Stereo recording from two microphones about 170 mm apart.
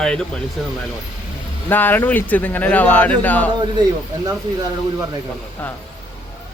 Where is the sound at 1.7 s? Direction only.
10° left (ahead or behind).